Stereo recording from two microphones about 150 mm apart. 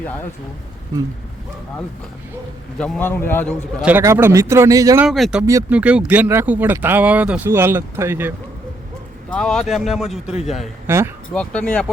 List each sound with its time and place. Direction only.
0.0 s a man's voice: 10° left (ahead or behind)
2.7 s a man's voice: 5° left (ahead or behind)
3.8 s speech: 10° right (ahead or behind)
5.0 s speech: centre (ahead or behind); by 8.3 s 15° right (ahead or behind)
9.3 s speech: 5° left (ahead or behind)
10.8 s speech: 15° right (ahead or behind)
11.3 s a man's voice: 5° left (ahead or behind)